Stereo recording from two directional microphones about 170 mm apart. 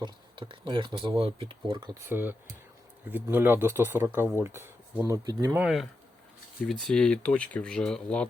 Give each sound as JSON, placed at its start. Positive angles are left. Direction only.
{"t": 0.0, "sound": "speech", "side_deg": -30}
{"t": 2.0, "sound": "speech", "side_deg": -10}
{"t": 5.5, "sound": "speech", "side_deg": 0}